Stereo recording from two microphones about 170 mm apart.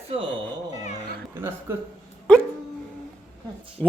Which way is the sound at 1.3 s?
15° right (ahead or behind).